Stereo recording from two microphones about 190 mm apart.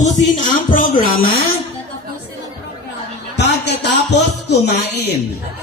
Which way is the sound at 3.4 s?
65° left (ahead or behind).